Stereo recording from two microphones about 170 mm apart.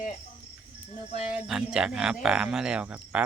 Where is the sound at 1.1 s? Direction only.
40° left (ahead or behind).